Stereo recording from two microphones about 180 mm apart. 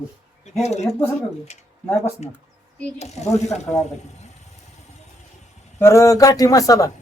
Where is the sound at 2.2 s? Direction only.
40° left (ahead or behind).